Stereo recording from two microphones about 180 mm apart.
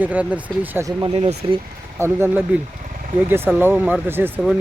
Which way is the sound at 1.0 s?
30° right (ahead or behind).